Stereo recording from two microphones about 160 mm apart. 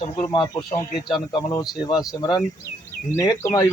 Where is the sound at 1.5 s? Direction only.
25° left (ahead or behind).